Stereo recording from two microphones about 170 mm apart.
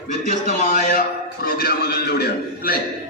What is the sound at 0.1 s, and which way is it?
A man's voice, 45° left (ahead or behind).